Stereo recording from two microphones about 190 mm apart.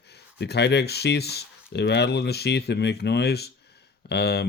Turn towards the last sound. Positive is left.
turn(degrees=60)  # may be behind; listen again after turning